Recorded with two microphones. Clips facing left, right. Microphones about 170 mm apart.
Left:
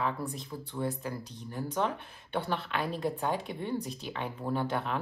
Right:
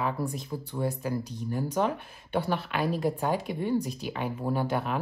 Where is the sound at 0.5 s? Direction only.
35° right (ahead or behind).